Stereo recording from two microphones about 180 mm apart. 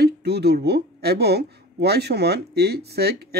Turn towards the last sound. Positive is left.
turn(degrees=-60)  # may be behind; listen again after turning